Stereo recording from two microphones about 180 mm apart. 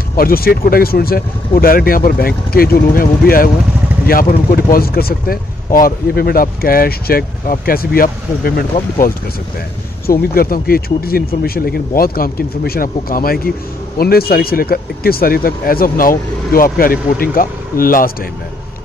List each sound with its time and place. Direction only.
0.1 s speech: 55° left (ahead or behind)